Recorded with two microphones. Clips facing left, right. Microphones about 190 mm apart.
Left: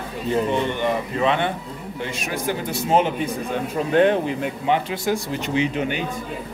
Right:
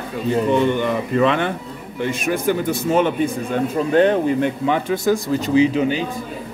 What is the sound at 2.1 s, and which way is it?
A man's voice, 50° right (ahead or behind).